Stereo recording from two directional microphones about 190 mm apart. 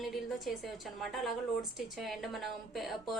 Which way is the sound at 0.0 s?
Centre (ahead or behind).